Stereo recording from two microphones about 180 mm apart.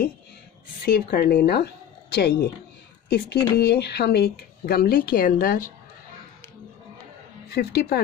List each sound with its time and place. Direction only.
0.8 s speech: 60° left (ahead or behind)
7.4 s speech: 65° left (ahead or behind)